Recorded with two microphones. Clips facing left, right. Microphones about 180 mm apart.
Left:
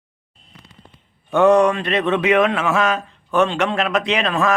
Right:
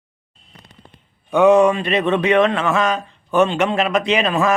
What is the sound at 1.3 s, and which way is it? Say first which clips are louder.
Speech: right 1 dB; centre (ahead or behind).